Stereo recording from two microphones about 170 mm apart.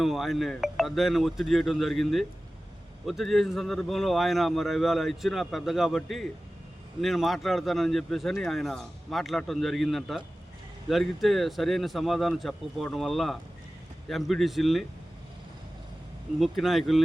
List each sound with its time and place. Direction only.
0.0 s speech: centre (ahead or behind)
16.4 s speech: centre (ahead or behind)